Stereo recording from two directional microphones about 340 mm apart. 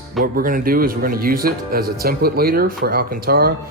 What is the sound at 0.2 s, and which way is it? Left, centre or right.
Speech, right.